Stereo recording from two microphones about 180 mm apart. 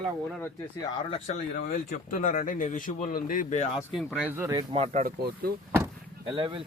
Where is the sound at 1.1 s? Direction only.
30° left (ahead or behind).